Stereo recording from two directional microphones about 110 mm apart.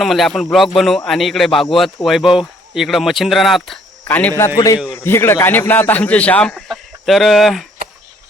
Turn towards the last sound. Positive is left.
turn(degrees=0)  # may be behind; listen again after turning